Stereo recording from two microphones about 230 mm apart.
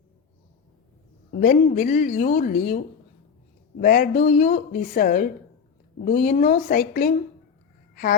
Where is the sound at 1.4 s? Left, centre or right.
Left.